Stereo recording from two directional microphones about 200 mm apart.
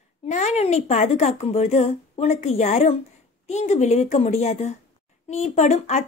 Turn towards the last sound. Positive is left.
turn(degrees=35)  # may be behind; listen again after turning